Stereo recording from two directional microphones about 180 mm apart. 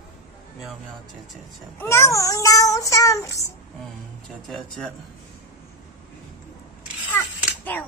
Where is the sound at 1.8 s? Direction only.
15° left (ahead or behind).